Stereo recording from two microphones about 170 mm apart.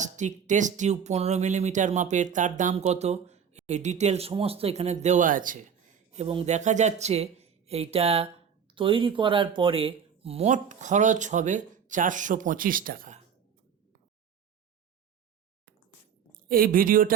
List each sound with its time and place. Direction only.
0.0 s speech: 45° right (ahead or behind)
6.1 s speech: 40° right (ahead or behind); by 13.1 s 55° right (ahead or behind)
16.5 s speech: 55° right (ahead or behind)